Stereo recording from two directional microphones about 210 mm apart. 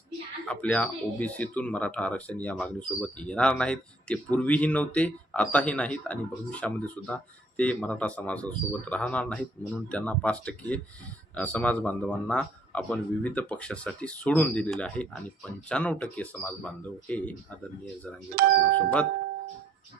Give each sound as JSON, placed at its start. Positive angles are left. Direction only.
{"t": 0.4, "sound": "a man's voice", "side_deg": 5}
{"t": 18.4, "sound": "speech", "side_deg": -45}